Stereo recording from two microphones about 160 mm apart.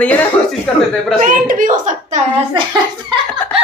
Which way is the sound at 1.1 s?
55° right (ahead or behind).